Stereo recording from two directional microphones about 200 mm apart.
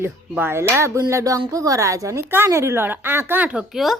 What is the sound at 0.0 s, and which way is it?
Speech, 10° right (ahead or behind).